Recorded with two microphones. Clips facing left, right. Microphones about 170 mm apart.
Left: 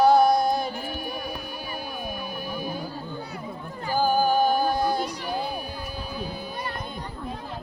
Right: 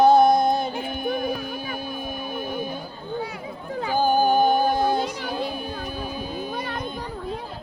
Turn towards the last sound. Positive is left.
turn(degrees=-20)  # may be behind; listen again after turning